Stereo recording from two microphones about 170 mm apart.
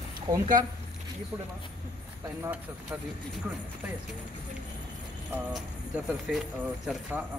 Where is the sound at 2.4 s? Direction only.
10° right (ahead or behind).